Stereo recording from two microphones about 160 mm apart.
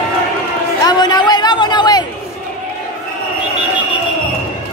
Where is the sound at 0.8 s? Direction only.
25° left (ahead or behind).